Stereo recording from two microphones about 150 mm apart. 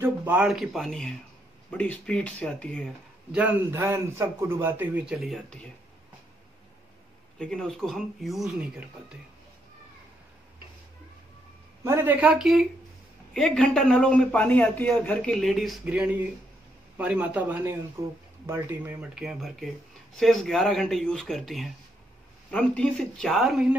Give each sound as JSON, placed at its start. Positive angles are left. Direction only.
{"t": 0.0, "sound": "a man's voice", "side_deg": -10}
{"t": 3.3, "sound": "a man's voice", "side_deg": -10}
{"t": 7.3, "sound": "speech", "side_deg": 5}
{"t": 11.8, "sound": "a man's voice", "side_deg": -15}